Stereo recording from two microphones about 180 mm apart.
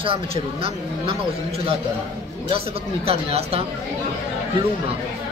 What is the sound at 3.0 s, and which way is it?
Speech, 35° right (ahead or behind).